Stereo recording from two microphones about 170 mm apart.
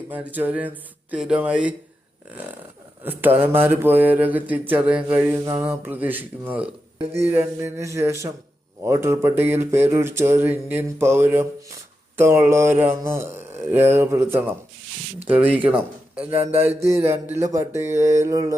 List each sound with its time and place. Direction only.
0.1 s mantra: 10° right (ahead or behind)
3.0 s mantra: 10° right (ahead or behind)
17.4 s a sound: 20° right (ahead or behind)
17.7 s mantra: 15° right (ahead or behind)